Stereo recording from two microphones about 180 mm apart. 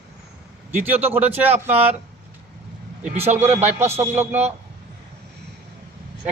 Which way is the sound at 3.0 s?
35° right (ahead or behind).